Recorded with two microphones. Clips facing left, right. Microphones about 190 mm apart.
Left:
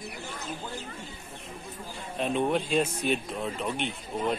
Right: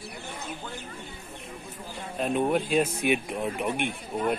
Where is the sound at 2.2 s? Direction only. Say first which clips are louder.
Right 2 dB; 5° right (ahead or behind).